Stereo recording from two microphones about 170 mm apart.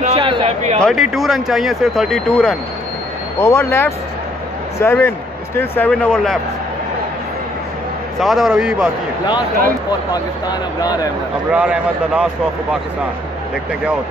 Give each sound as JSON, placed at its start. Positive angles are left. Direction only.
{"t": 0.0, "sound": "a sound", "side_deg": -35}
{"t": 0.7, "sound": "speech", "side_deg": 0}
{"t": 3.3, "sound": "speech", "side_deg": 15}
{"t": 8.2, "sound": "speech", "side_deg": 0}
{"t": 11.5, "sound": "speech", "side_deg": -5}